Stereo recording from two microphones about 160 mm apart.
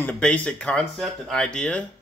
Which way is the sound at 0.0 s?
10° left (ahead or behind).